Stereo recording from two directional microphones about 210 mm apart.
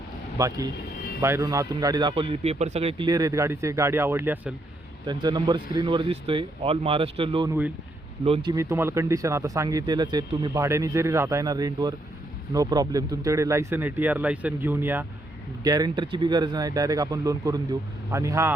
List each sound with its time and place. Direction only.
0.3 s a man's voice: 15° right (ahead or behind)